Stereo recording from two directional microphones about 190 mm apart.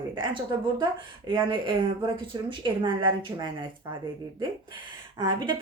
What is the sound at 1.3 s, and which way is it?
A woman's voice, 25° right (ahead or behind).